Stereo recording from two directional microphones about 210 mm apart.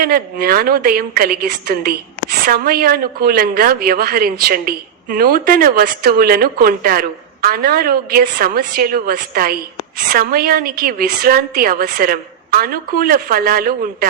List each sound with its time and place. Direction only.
0.0 s speech: 45° right (ahead or behind)